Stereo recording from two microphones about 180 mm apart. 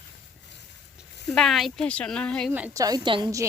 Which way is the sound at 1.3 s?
Centre (ahead or behind).